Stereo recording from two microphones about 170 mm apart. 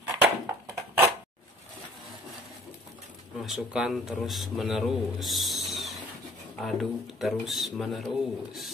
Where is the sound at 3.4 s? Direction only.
5° right (ahead or behind).